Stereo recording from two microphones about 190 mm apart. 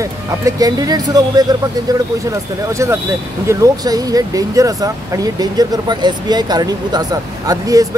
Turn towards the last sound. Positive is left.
turn(degrees=-20)  # may be behind; listen again after turning